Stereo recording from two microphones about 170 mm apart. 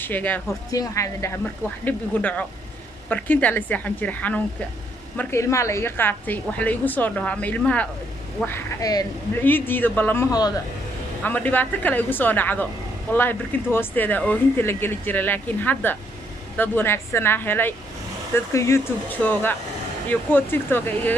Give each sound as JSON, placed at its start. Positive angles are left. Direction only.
{"t": 0.0, "sound": "speech", "side_deg": 10}
{"t": 11.2, "sound": "speech", "side_deg": 10}